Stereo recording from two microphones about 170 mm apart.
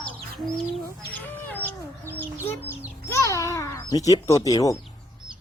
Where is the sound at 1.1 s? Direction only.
10° left (ahead or behind).